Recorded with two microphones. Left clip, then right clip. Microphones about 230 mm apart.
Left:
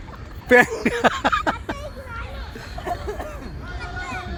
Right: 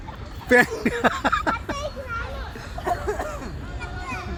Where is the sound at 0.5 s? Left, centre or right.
Centre.